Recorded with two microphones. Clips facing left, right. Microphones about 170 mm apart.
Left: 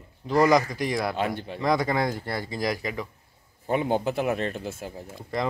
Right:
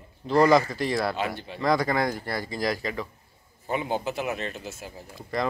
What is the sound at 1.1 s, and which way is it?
Speech, 50° left (ahead or behind).